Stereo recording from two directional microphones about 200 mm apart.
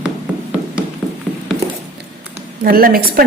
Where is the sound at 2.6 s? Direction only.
45° right (ahead or behind).